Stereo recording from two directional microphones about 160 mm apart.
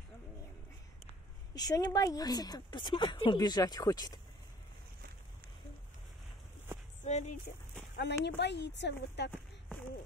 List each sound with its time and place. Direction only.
1.5 s speech: 25° left (ahead or behind)
7.1 s speech: 45° left (ahead or behind)
8.0 s a woman's voice: 90° left